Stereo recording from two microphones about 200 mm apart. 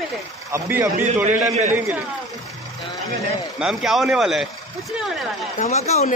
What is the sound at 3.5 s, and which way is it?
Speech, centre (ahead or behind).